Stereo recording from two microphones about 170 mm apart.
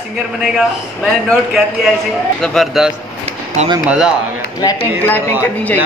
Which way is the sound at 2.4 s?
Centre (ahead or behind).